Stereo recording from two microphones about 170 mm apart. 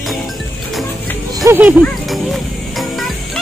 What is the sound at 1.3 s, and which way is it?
Music, 20° right (ahead or behind).